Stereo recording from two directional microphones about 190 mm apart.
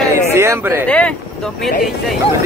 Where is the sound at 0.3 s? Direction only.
15° right (ahead or behind).